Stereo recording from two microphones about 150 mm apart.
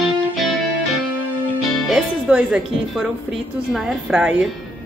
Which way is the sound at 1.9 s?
5° right (ahead or behind).